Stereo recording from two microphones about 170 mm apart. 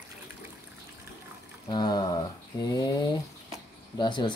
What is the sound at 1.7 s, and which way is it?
Speech, 25° left (ahead or behind).